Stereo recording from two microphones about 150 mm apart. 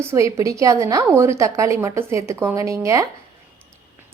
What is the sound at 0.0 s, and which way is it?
A woman's voice, 15° right (ahead or behind).